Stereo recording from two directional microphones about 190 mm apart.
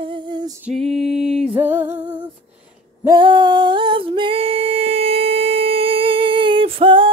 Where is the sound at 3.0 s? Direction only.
25° right (ahead or behind).